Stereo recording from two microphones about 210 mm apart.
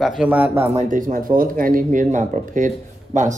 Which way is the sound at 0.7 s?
40° right (ahead or behind).